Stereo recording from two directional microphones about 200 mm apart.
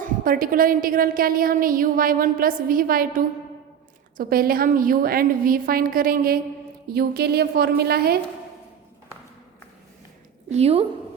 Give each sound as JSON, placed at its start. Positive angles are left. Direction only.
{"t": 0.0, "sound": "a woman's voice", "side_deg": -45}
{"t": 10.5, "sound": "a woman's voice", "side_deg": -30}